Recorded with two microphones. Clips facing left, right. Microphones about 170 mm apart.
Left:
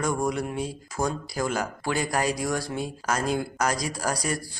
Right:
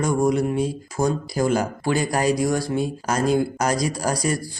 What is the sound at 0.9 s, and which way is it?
Speech, 30° right (ahead or behind).